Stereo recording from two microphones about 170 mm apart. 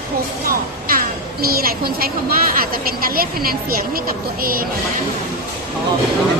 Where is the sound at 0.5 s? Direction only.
60° right (ahead or behind).